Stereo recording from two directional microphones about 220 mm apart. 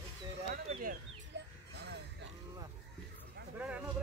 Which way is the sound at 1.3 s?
50° right (ahead or behind).